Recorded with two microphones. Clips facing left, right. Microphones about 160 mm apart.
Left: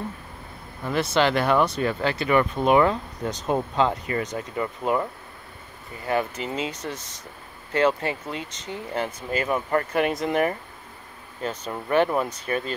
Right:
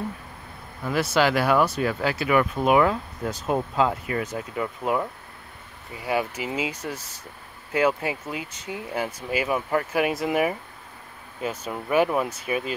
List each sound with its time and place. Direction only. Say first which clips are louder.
1.1 s speech: even; 5° right (ahead or behind)